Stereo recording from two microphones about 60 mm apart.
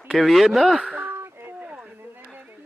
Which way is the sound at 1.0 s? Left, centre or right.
Right.